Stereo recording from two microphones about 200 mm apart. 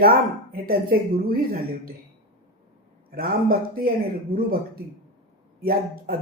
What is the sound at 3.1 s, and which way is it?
A woman's voice, 50° right (ahead or behind).